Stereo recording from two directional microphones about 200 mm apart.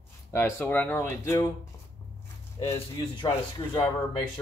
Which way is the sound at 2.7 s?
25° left (ahead or behind).